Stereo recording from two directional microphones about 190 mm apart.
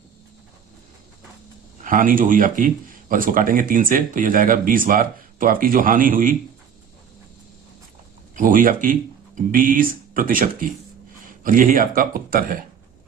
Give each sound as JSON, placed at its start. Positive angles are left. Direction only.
{"t": 1.8, "sound": "a man's voice", "side_deg": -45}
{"t": 8.4, "sound": "a man's voice", "side_deg": -45}